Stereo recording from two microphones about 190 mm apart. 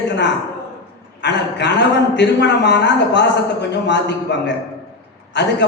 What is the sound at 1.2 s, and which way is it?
A man's voice, 65° left (ahead or behind).